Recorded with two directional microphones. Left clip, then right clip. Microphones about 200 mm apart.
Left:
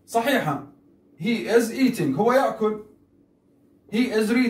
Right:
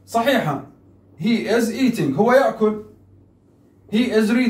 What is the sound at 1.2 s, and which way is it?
Speech, 15° right (ahead or behind).